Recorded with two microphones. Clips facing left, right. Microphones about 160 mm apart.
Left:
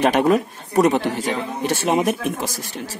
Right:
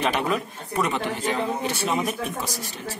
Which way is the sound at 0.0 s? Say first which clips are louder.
Left 8 dB; 45° left (ahead or behind).